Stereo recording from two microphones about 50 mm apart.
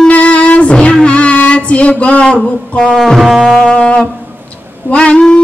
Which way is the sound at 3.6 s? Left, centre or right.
Centre.